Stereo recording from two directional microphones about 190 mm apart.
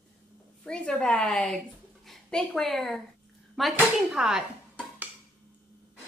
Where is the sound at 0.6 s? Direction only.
5° left (ahead or behind).